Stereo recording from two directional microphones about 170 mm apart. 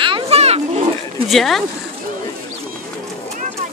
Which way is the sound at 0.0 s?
35° right (ahead or behind).